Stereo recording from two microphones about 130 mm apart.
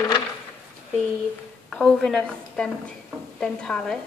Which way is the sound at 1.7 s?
5° left (ahead or behind).